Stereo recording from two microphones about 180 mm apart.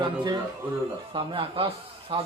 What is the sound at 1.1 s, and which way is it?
Speech, 30° right (ahead or behind).